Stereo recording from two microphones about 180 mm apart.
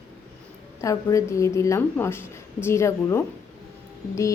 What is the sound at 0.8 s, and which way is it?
Speech, 15° left (ahead or behind).